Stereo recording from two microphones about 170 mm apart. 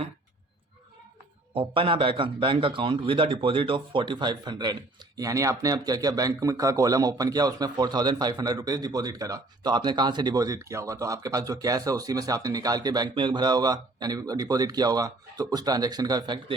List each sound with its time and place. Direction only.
1.5 s speech: 30° right (ahead or behind)